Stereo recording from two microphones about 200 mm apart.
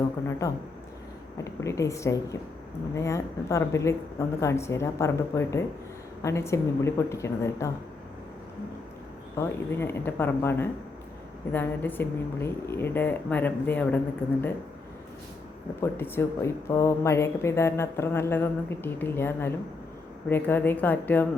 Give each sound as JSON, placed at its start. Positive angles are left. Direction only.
{"t": 0.3, "sound": "a woman's voice", "side_deg": 15}
{"t": 1.6, "sound": "a woman's voice", "side_deg": 15}
{"t": 9.4, "sound": "a woman's voice", "side_deg": 10}
{"t": 15.8, "sound": "a woman's voice", "side_deg": 10}